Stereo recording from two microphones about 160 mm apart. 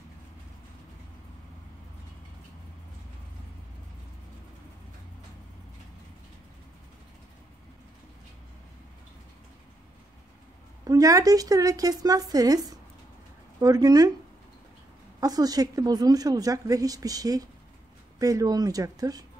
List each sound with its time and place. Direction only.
10.9 s speech: 20° right (ahead or behind)
15.1 s speech: 25° right (ahead or behind)